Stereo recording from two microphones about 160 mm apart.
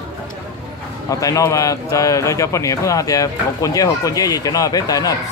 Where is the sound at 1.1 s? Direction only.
20° left (ahead or behind).